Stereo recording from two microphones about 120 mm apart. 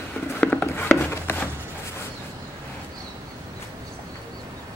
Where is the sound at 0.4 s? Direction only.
15° left (ahead or behind).